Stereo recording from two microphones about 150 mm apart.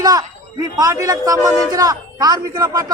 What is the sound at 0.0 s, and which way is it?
A man's voice, 25° right (ahead or behind).